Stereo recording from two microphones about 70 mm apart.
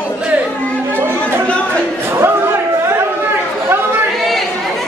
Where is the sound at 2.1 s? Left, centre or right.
Right.